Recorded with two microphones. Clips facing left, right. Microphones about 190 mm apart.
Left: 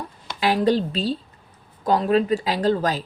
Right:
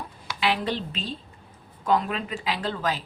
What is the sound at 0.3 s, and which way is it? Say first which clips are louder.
A woman's voice: left 7 dB; 40° left (ahead or behind).